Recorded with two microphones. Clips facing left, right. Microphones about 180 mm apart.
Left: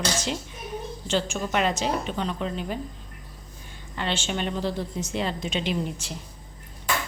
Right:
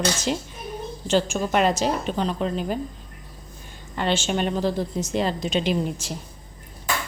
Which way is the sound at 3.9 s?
45° right (ahead or behind).